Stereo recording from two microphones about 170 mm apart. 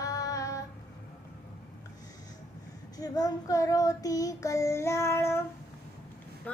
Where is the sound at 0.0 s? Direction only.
20° left (ahead or behind).